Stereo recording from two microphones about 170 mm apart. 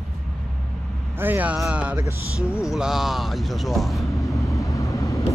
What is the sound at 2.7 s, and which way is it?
Speech, centre (ahead or behind).